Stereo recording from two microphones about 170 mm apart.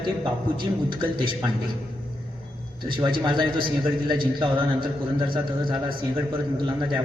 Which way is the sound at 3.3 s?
25° right (ahead or behind).